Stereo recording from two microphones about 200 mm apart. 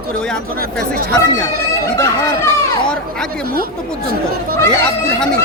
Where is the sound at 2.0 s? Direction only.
15° left (ahead or behind).